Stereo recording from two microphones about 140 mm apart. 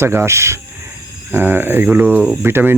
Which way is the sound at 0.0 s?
15° right (ahead or behind).